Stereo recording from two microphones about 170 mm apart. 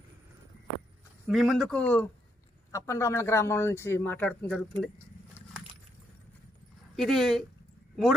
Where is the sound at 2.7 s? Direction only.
15° left (ahead or behind).